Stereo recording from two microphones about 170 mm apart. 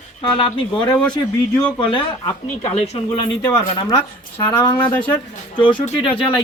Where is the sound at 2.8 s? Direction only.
30° left (ahead or behind).